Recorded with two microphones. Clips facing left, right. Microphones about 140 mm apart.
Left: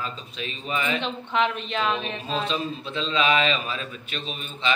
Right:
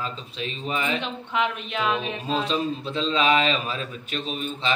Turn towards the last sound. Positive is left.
turn(degrees=-40)  # may be behind; listen again after turning